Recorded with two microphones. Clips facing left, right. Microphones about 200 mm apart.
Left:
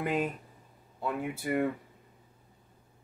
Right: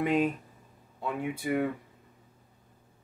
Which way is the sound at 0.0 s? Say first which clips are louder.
Right 4 dB; 5° left (ahead or behind).